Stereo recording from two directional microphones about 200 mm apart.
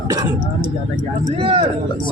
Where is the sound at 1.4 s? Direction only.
25° right (ahead or behind).